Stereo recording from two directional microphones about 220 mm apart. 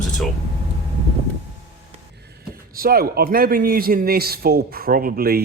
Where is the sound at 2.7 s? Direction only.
40° right (ahead or behind).